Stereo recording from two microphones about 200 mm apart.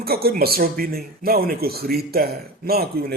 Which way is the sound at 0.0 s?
50° right (ahead or behind).